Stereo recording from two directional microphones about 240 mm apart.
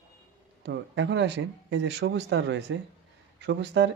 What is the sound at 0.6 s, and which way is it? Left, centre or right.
Speech, right.